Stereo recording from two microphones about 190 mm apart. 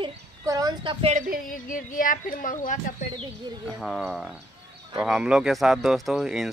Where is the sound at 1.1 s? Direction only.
45° right (ahead or behind).